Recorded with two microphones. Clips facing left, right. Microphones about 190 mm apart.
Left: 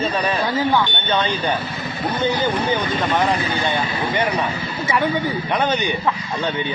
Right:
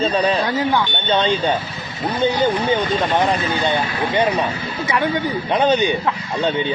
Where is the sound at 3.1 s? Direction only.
20° right (ahead or behind).